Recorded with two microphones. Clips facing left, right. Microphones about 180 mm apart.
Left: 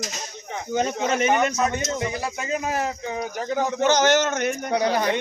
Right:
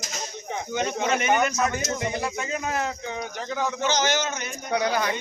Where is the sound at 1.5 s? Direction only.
20° left (ahead or behind); by 4.7 s 65° left (ahead or behind).